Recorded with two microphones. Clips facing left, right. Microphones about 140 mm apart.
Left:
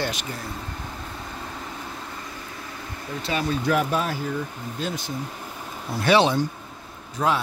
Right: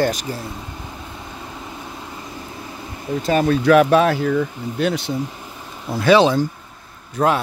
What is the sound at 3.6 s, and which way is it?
Speech, 90° right.